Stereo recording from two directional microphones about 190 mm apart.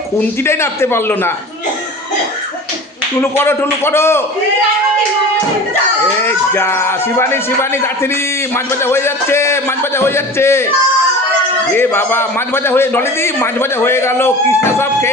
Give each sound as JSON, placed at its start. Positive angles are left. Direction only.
{"t": 0.4, "sound": "a man's voice", "side_deg": 15}
{"t": 3.2, "sound": "a man's voice", "side_deg": 10}
{"t": 6.2, "sound": "a man's voice", "side_deg": 10}
{"t": 11.7, "sound": "a man's voice", "side_deg": 10}